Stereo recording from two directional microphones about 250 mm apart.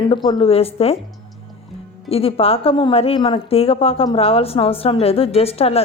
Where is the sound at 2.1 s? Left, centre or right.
Left.